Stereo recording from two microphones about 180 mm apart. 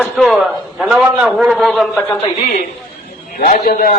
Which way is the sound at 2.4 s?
50° left (ahead or behind).